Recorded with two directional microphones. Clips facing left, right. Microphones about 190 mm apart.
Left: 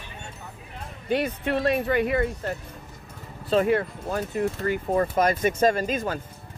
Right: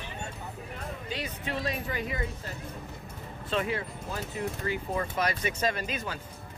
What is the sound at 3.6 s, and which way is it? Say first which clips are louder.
Speech: left 10 dB; 50° left (ahead or behind).